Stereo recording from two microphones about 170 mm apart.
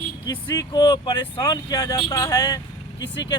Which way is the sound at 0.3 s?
20° left (ahead or behind).